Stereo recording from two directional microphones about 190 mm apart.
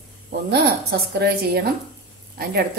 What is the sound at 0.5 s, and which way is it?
A woman's voice, 55° right (ahead or behind).